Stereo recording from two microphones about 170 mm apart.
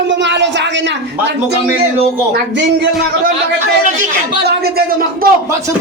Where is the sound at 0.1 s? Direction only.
90° right.